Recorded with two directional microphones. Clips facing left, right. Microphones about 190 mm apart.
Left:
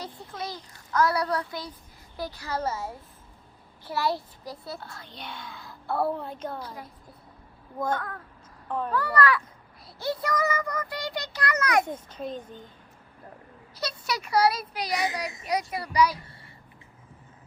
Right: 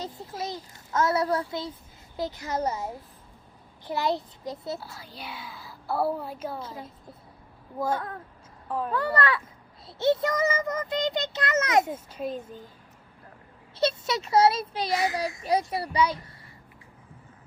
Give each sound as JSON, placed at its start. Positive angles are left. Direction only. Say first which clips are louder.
{"t": 0.3, "sound": "a child's voice", "louder": "right 2 dB", "side_deg": -25}
{"t": 2.1, "sound": "child singing", "louder": "right 2 dB", "side_deg": -20}
{"t": 4.8, "sound": "a child's voice", "louder": "even", "side_deg": -5}
{"t": 6.6, "sound": "child singing", "louder": "right 1 dB", "side_deg": -25}
{"t": 11.9, "sound": "a child's voice", "louder": "right 2 dB", "side_deg": -5}
{"t": 13.7, "sound": "child singing", "louder": "right 6 dB", "side_deg": -25}